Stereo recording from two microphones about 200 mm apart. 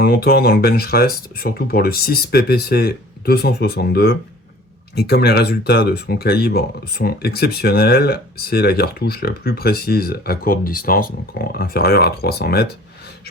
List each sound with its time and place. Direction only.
0.0 s speech: 50° left (ahead or behind)